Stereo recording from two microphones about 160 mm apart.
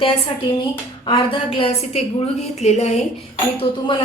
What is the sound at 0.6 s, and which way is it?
A woman's voice, 30° left (ahead or behind).